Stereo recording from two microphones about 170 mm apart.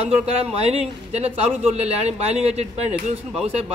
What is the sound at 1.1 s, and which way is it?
Speech, 40° right (ahead or behind).